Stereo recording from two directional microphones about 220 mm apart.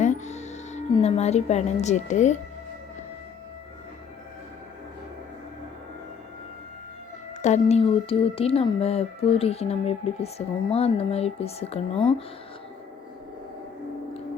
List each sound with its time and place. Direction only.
0.0 s music: 30° left (ahead or behind)
0.9 s speech: 30° left (ahead or behind)
7.4 s speech: 30° left (ahead or behind)